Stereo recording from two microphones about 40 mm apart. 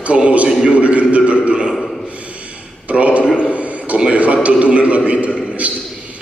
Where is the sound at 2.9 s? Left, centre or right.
Right.